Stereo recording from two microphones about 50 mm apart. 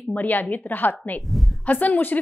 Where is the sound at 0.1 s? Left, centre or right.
Left.